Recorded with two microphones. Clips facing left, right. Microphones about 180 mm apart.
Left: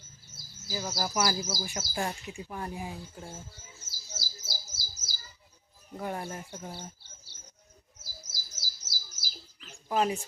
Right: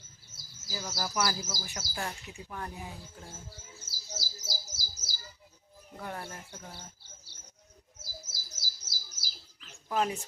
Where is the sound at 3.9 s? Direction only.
40° right (ahead or behind).